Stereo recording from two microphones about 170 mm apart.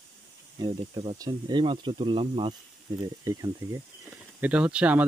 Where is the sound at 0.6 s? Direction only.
30° right (ahead or behind).